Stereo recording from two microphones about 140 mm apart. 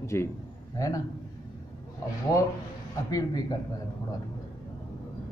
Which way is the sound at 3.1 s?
25° left (ahead or behind).